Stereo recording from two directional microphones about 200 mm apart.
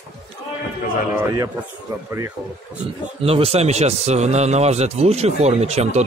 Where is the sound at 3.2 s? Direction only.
30° right (ahead or behind).